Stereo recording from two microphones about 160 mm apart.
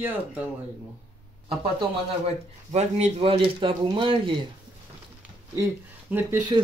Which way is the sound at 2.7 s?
40° right (ahead or behind).